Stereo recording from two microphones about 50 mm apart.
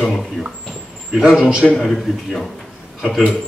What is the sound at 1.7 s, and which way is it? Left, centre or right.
Speech, centre.